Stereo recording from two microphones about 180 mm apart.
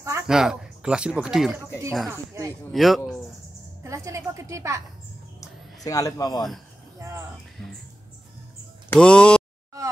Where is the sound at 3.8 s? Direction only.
15° right (ahead or behind).